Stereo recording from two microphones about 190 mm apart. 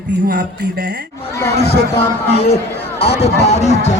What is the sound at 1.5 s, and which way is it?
Speech, 60° left (ahead or behind).